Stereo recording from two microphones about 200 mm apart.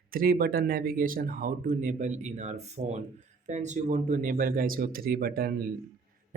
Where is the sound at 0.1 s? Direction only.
45° right (ahead or behind).